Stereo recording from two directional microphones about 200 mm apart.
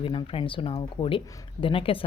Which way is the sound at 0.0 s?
25° left (ahead or behind).